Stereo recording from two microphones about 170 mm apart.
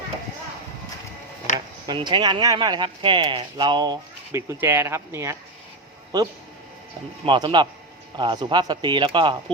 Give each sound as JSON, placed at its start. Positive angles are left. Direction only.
{"t": 1.5, "sound": "speech", "side_deg": -25}
{"t": 7.3, "sound": "speech", "side_deg": -30}